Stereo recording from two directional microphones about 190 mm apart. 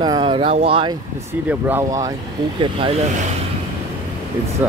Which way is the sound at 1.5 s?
10° right (ahead or behind).